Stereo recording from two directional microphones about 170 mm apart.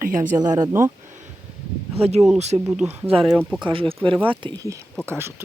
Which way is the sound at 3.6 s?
30° right (ahead or behind).